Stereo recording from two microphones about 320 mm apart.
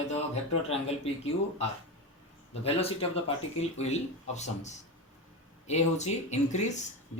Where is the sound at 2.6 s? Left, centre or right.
Centre.